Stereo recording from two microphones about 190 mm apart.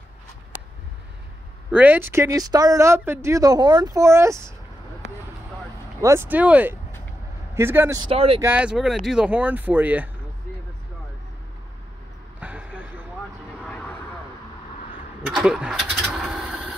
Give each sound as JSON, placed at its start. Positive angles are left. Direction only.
{"t": 1.7, "sound": "speech", "side_deg": -10}
{"t": 5.9, "sound": "speech", "side_deg": -15}
{"t": 8.1, "sound": "speech", "side_deg": -30}
{"t": 8.4, "sound": "speech", "side_deg": -10}
{"t": 12.4, "sound": "vehicle", "side_deg": -5}
{"t": 13.7, "sound": "vehicle", "side_deg": 5}
{"t": 15.3, "sound": "vehicle", "side_deg": -5}